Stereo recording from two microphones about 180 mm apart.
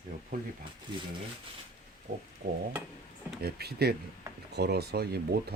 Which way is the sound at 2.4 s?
60° right (ahead or behind).